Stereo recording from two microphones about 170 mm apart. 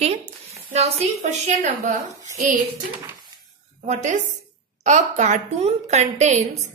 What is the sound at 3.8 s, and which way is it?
A woman's voice, 45° right (ahead or behind).